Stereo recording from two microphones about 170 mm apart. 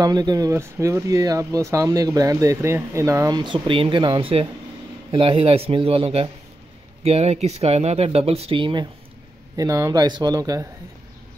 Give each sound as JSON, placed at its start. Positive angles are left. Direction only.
{"t": 0.0, "sound": "speech", "side_deg": -25}
{"t": 9.6, "sound": "speech", "side_deg": -20}